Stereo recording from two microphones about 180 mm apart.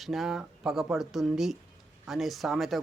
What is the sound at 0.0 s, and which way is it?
Speech, centre (ahead or behind).